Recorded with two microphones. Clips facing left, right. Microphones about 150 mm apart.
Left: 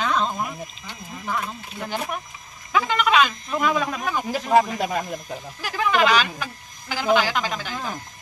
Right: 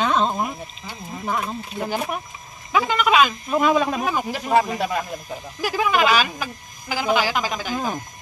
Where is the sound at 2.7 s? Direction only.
10° right (ahead or behind).